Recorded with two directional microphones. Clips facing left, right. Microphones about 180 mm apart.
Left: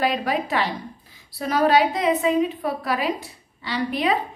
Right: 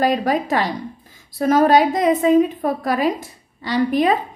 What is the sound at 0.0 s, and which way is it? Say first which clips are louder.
A woman's voice: right 5 dB; 40° right (ahead or behind).